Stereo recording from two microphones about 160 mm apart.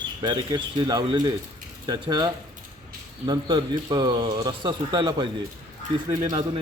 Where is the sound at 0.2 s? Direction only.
25° right (ahead or behind).